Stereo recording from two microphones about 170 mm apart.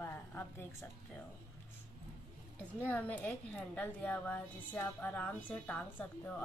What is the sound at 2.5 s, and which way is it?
A woman's voice, 10° left (ahead or behind).